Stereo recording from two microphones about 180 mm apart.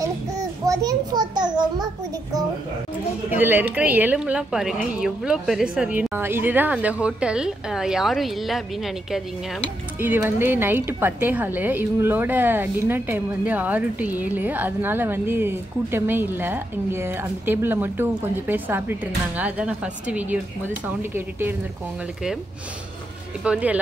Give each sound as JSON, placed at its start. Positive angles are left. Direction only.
{"t": 0.0, "sound": "a sound", "side_deg": -20}
{"t": 3.3, "sound": "a woman's voice", "side_deg": -10}
{"t": 9.9, "sound": "a woman's voice", "side_deg": -10}
{"t": 23.4, "sound": "a woman's voice", "side_deg": -5}